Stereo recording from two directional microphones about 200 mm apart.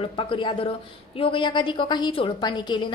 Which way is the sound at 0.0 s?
25° left (ahead or behind).